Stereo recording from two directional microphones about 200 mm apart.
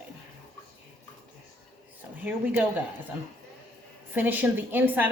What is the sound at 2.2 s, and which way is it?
Speech, 10° right (ahead or behind).